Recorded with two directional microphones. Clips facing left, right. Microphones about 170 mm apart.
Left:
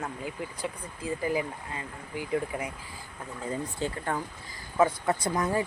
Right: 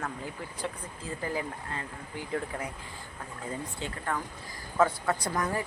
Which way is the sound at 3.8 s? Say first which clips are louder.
Left 9 dB; 40° left (ahead or behind).